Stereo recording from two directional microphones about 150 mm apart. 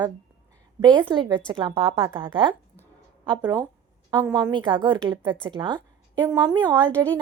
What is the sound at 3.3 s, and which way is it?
A woman's voice, 25° right (ahead or behind).